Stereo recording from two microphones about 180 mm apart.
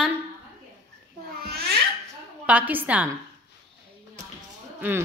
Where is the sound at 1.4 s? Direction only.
60° right (ahead or behind).